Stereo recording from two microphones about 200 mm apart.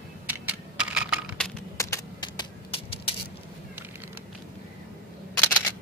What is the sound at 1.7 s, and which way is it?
Typing, 15° left (ahead or behind).